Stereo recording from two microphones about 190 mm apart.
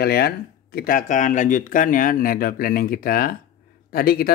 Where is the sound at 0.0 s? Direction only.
55° left (ahead or behind).